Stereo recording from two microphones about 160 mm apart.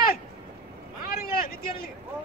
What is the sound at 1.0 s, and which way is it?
Vehicle, 65° left (ahead or behind).